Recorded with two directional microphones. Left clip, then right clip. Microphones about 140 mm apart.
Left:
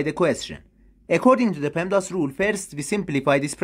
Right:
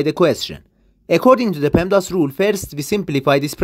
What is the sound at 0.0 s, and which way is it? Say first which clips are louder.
Speech: right 6 dB; 35° right (ahead or behind).